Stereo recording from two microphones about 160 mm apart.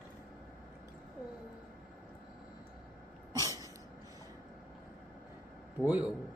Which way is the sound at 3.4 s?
25° right (ahead or behind).